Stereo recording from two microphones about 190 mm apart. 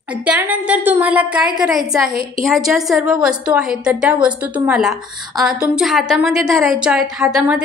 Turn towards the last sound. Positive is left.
turn(degrees=-5)  # may be behind; listen again after turning